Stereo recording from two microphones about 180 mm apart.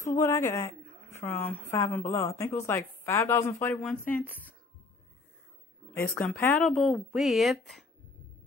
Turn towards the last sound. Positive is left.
turn(degrees=0)  # may be behind; listen again after turning